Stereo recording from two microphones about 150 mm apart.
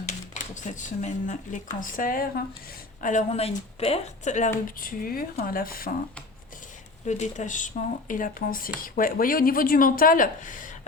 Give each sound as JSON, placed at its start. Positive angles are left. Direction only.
{"t": 0.0, "sound": "speech", "side_deg": 55}
{"t": 3.0, "sound": "speech", "side_deg": 55}
{"t": 4.8, "sound": "speech", "side_deg": 70}
{"t": 7.0, "sound": "speech", "side_deg": 50}